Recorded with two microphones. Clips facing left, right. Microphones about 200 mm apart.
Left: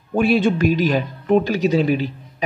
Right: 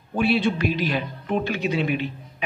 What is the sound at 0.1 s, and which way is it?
Speech, 50° left (ahead or behind).